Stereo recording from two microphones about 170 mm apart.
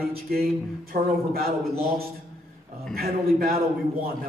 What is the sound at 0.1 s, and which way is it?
A man's voice, 65° right (ahead or behind).